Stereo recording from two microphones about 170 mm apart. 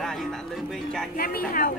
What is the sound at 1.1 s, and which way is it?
Speech, 60° left (ahead or behind).